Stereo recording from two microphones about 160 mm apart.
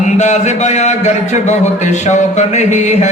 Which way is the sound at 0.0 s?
45° left (ahead or behind).